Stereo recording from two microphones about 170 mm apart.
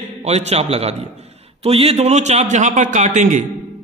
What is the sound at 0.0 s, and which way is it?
A man's voice, 40° right (ahead or behind).